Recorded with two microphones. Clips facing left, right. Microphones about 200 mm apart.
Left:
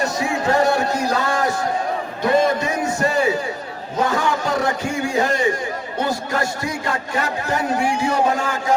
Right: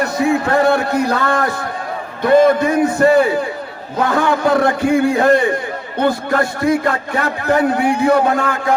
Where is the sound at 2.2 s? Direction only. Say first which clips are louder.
Right 7 dB; 55° right (ahead or behind).